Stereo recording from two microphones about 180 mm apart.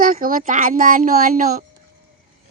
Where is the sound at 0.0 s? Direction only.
50° right (ahead or behind).